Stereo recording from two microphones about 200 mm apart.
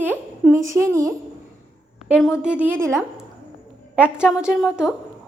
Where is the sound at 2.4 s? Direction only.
5° right (ahead or behind).